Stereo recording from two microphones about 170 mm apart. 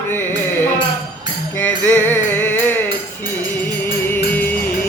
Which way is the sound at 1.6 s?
10° left (ahead or behind).